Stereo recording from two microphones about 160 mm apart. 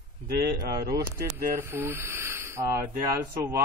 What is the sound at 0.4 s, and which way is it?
Speech, 75° right (ahead or behind).